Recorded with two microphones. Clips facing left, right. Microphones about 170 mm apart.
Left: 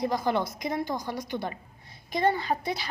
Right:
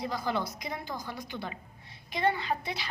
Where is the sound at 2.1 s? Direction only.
40° left (ahead or behind).